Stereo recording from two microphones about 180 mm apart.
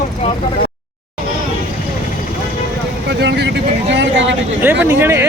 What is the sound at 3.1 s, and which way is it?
Speech, 70° right (ahead or behind).